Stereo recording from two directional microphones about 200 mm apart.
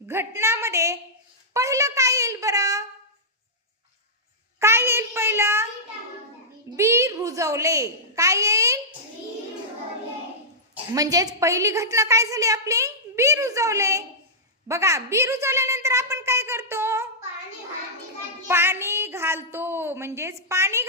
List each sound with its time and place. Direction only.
0.1 s a woman's voice: 15° right (ahead or behind)
4.6 s a woman's voice: 15° right (ahead or behind)
6.7 s a woman's voice: 15° right (ahead or behind)
10.9 s a woman's voice: 15° right (ahead or behind)
18.4 s a woman's voice: 10° right (ahead or behind)